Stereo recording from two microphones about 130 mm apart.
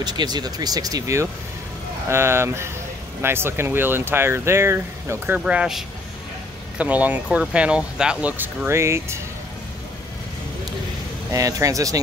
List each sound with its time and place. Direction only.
0.0 s speech: 30° right (ahead or behind)
5.4 s speech: 5° right (ahead or behind)
11.3 s speech: 25° right (ahead or behind)